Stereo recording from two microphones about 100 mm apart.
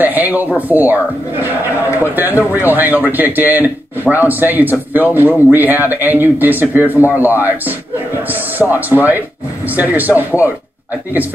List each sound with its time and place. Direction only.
0.0 s a man's voice: 20° right (ahead or behind)
2.1 s a man's voice: 20° right (ahead or behind)